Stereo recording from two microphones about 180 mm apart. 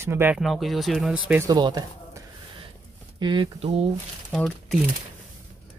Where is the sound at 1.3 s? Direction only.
15° right (ahead or behind).